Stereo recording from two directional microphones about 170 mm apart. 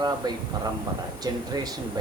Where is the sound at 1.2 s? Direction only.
25° right (ahead or behind).